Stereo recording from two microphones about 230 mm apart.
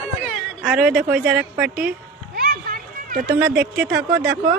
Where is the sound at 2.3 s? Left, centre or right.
Right.